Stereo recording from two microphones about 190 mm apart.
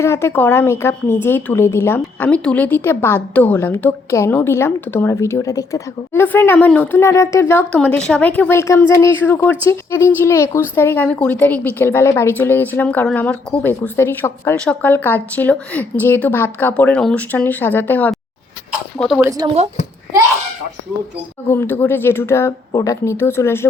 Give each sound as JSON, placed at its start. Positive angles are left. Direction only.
{"t": 0.0, "sound": "a woman's voice", "side_deg": 15}
{"t": 19.2, "sound": "a woman's voice", "side_deg": -20}
{"t": 21.4, "sound": "a woman's voice", "side_deg": 15}